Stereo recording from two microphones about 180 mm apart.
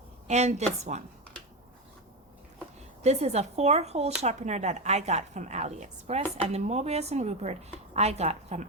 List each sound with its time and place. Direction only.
0.3 s a woman's voice: 40° right (ahead or behind)
3.0 s a woman's voice: 40° right (ahead or behind)